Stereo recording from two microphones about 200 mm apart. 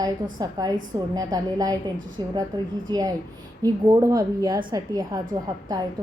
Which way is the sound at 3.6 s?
20° right (ahead or behind).